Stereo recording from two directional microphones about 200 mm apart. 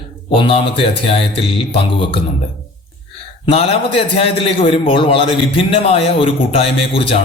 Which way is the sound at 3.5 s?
30° left (ahead or behind).